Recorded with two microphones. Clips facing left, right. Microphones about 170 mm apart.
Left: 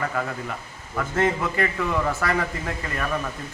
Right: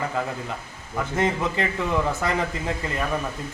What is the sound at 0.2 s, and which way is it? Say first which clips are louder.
A man's voice: even; 20° right (ahead or behind).